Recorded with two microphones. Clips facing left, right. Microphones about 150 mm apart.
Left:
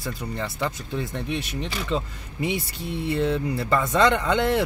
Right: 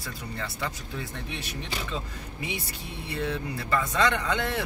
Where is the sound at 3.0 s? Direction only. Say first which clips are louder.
Left 7 dB; 25° left (ahead or behind).